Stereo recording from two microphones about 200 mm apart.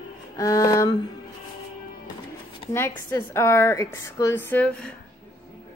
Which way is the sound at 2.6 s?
25° left (ahead or behind).